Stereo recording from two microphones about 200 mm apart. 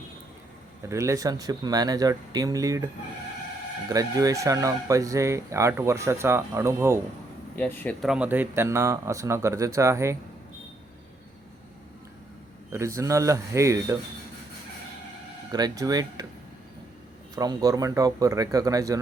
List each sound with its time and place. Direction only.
0.8 s speech: 15° right (ahead or behind)
7.5 s speech: 10° left (ahead or behind)
8.1 s speech: 10° right (ahead or behind)
12.7 s speech: 15° right (ahead or behind)
15.5 s speech: 20° right (ahead or behind)
17.3 s speech: 20° right (ahead or behind)